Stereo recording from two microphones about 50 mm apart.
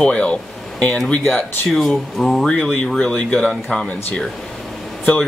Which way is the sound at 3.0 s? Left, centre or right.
Centre.